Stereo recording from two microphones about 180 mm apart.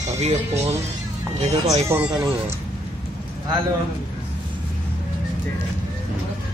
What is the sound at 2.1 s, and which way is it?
Speech, 20° right (ahead or behind).